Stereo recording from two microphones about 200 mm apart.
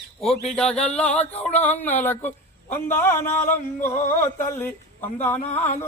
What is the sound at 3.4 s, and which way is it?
Music, 40° left (ahead or behind).